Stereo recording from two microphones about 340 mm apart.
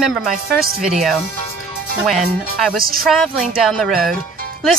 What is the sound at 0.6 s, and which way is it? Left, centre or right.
Speech, right.